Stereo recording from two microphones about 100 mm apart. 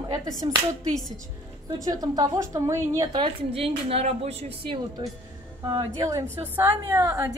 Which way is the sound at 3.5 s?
80° right.